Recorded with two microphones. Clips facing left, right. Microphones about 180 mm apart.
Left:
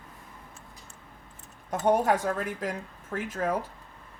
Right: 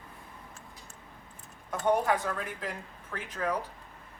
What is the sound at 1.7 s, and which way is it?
A woman's voice, 45° left (ahead or behind).